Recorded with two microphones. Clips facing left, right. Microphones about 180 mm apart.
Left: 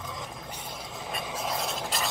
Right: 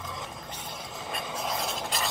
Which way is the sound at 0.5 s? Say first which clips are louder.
Even; 10° left (ahead or behind).